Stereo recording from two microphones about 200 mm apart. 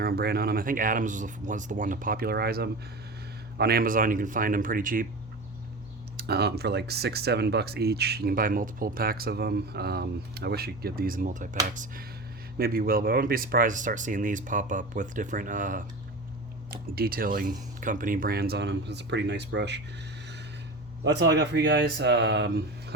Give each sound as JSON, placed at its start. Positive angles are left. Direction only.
{"t": 0.0, "sound": "speech", "side_deg": -50}
{"t": 6.1, "sound": "speech", "side_deg": -55}
{"t": 21.0, "sound": "speech", "side_deg": -60}